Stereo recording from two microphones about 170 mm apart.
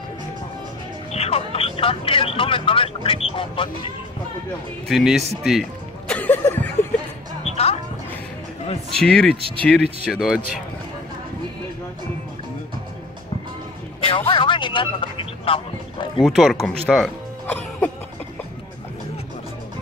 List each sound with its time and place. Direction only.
1.1 s speech: 35° left (ahead or behind)
4.8 s speech: centre (ahead or behind)
5.4 s music: centre (ahead or behind)
6.1 s a sound: 10° left (ahead or behind)
7.5 s music: 35° left (ahead or behind)
8.9 s speech: 5° left (ahead or behind)
14.0 s a sound: 30° left (ahead or behind)
16.3 s speech: centre (ahead or behind)
17.5 s music: 10° left (ahead or behind)